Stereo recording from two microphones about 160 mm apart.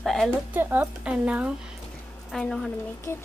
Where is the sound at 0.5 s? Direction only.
10° right (ahead or behind).